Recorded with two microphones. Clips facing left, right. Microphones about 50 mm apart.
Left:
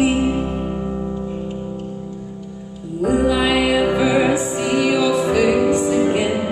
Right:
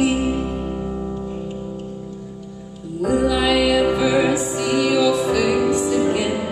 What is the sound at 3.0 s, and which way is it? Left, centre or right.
Music, centre.